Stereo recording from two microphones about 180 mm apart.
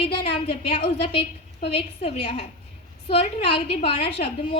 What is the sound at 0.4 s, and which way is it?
A woman's voice, 35° left (ahead or behind).